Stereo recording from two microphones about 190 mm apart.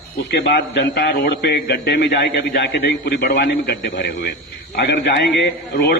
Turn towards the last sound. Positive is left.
turn(degrees=65)  # may be behind; listen again after turning